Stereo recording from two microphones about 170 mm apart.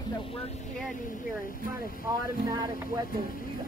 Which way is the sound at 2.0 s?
20° right (ahead or behind).